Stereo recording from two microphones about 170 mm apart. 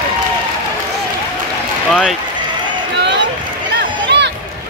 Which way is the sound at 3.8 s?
90° right.